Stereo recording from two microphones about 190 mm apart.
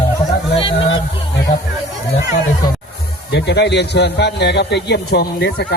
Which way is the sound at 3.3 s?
65° left (ahead or behind).